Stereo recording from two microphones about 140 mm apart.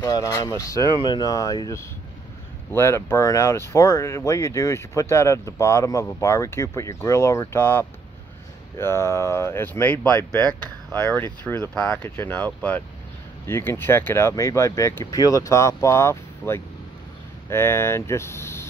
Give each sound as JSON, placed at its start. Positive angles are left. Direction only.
{"t": 0.0, "sound": "speech", "side_deg": 25}